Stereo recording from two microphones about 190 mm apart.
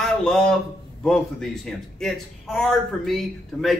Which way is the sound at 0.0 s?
5° left (ahead or behind).